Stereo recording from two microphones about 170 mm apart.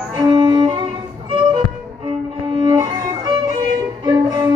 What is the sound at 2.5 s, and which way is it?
Music, 25° right (ahead or behind).